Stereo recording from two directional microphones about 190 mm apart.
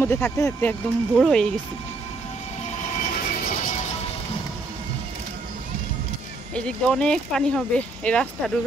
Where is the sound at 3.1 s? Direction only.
45° left (ahead or behind).